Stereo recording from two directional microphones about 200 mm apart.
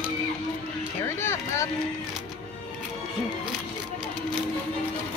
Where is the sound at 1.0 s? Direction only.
15° left (ahead or behind).